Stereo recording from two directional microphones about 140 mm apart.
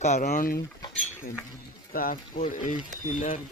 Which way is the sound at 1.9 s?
90° left.